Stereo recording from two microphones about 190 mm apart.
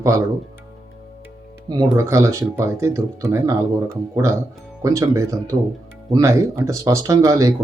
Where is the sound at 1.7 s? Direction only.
15° right (ahead or behind).